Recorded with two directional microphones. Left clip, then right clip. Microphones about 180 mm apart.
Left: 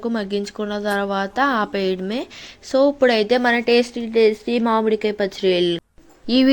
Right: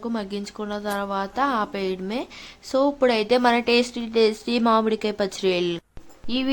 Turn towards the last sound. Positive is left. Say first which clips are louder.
# left 9 dB
turn(degrees=30)  # may be behind; listen again after turning